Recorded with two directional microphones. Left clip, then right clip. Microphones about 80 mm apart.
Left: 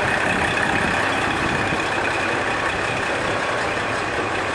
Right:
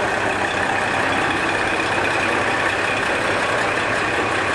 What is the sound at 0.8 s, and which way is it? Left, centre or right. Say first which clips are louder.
Vehicle: right 1 dB; left.